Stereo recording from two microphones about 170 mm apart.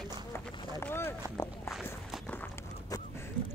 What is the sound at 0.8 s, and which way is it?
Speech, 15° left (ahead or behind).